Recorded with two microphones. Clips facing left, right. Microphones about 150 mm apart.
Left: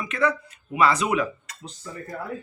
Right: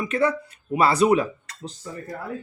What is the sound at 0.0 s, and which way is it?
Speech, 35° right (ahead or behind).